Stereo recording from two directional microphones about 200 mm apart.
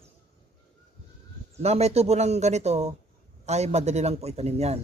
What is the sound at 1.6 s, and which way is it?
A man's voice, 30° right (ahead or behind).